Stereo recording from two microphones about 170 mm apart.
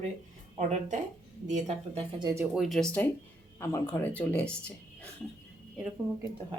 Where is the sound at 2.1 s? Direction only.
25° right (ahead or behind).